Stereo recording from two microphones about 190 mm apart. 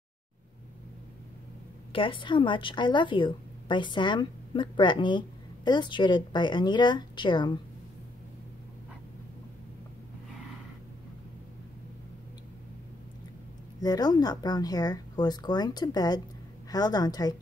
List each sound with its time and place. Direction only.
1.9 s a woman's voice: 25° left (ahead or behind)
13.7 s a woman's voice: 20° left (ahead or behind)